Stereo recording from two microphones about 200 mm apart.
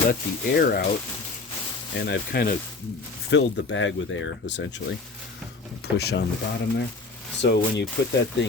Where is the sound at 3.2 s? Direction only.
65° left (ahead or behind).